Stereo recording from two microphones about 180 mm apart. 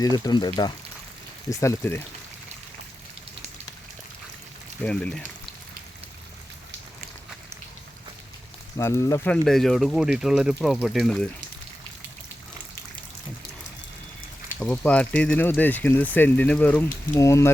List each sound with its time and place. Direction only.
0.0 s speech: 20° left (ahead or behind)
1.5 s speech: 15° left (ahead or behind)
4.8 s speech: 5° left (ahead or behind)
8.8 s speech: 15° left (ahead or behind)
9.3 s speech: 5° left (ahead or behind)
14.6 s speech: 5° left (ahead or behind)